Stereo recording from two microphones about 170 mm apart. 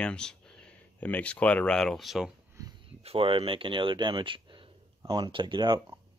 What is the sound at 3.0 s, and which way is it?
Speech, 35° right (ahead or behind).